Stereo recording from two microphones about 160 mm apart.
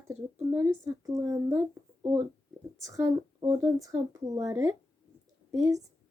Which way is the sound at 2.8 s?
20° right (ahead or behind).